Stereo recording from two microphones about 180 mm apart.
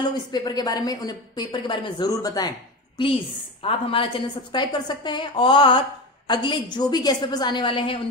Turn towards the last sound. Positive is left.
turn(degrees=30)  # may be behind; listen again after turning